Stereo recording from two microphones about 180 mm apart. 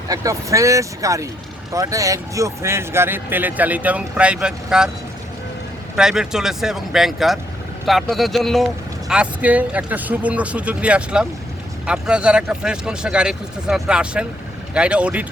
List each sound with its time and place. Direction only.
0.1 s speech: 20° right (ahead or behind)
6.0 s speech: 5° right (ahead or behind)